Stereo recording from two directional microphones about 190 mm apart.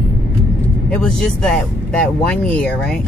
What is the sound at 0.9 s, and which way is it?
Speech, 5° left (ahead or behind).